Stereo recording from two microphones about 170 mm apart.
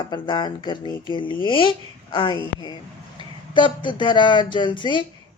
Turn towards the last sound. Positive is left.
turn(degrees=30)  # may be behind; listen again after turning